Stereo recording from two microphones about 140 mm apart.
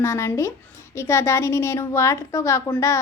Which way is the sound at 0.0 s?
20° left (ahead or behind).